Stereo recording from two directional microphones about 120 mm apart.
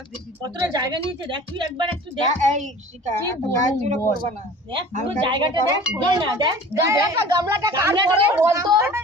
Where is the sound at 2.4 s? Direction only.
80° right.